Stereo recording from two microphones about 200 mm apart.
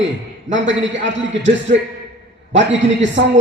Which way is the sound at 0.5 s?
65° right (ahead or behind).